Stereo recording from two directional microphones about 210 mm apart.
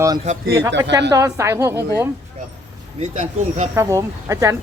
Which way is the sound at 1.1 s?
15° right (ahead or behind).